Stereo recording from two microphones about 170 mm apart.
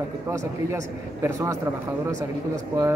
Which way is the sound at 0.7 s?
20° right (ahead or behind).